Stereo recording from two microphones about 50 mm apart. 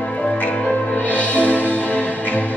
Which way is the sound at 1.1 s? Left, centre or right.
Left.